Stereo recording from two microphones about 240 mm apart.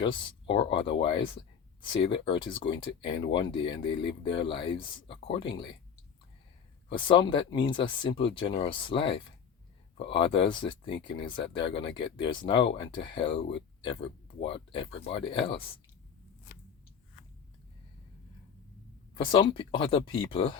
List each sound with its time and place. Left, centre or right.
0.0 s speech: left
6.8 s speech: centre
19.1 s speech: centre